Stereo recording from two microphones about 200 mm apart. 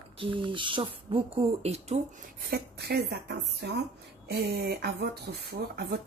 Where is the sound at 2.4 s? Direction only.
55° right (ahead or behind).